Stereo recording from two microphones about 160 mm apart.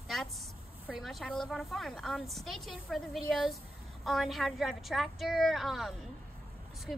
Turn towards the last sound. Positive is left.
turn(degrees=0)  # may be behind; listen again after turning